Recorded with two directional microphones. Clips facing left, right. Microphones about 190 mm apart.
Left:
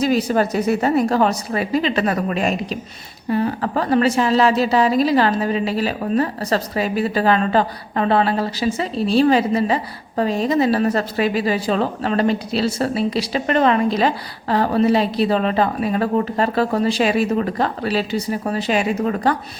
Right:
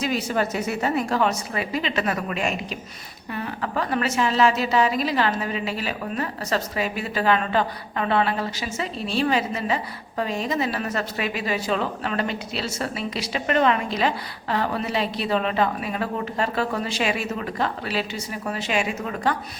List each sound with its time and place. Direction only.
0.0 s a woman's voice: 35° left (ahead or behind)